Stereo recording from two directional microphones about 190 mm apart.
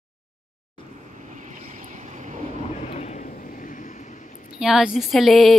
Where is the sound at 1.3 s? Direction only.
40° right (ahead or behind).